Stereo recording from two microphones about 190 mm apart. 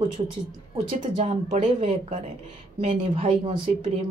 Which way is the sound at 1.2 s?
35° right (ahead or behind).